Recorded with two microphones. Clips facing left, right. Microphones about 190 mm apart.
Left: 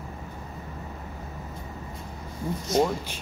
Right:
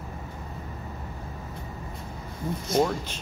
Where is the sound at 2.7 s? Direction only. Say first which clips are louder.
Even; 10° left (ahead or behind).